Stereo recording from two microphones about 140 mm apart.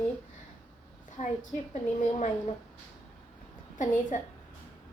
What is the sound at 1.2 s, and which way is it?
A woman's voice, 65° left (ahead or behind).